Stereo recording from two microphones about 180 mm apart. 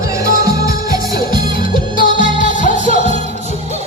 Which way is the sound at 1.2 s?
50° left (ahead or behind).